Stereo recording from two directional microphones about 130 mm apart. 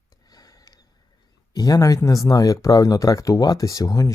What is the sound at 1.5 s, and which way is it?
Speech, 30° left (ahead or behind).